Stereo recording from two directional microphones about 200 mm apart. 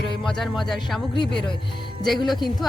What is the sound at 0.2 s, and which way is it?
A woman's voice, centre (ahead or behind).